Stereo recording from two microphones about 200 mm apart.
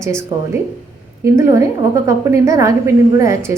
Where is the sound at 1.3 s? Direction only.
15° right (ahead or behind).